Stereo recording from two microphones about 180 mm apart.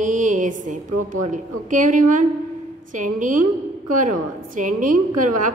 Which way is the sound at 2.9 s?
45° right (ahead or behind).